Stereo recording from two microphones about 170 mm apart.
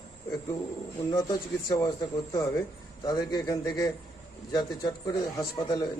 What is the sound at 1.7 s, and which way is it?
A man's voice, 25° left (ahead or behind).